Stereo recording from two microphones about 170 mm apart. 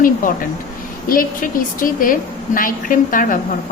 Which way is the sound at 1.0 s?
55° left (ahead or behind).